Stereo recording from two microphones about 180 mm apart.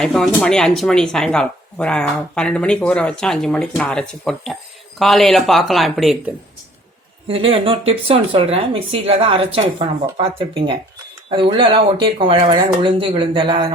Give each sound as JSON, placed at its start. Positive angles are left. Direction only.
{"t": 0.0, "sound": "speech", "side_deg": 5}
{"t": 7.3, "sound": "speech", "side_deg": -30}